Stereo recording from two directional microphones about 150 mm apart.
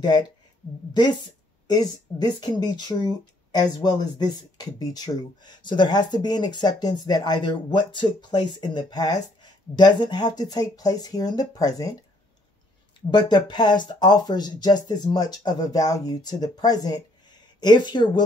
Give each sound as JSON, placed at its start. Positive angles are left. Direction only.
{"t": 1.7, "sound": "speech", "side_deg": 25}
{"t": 13.1, "sound": "speech", "side_deg": 30}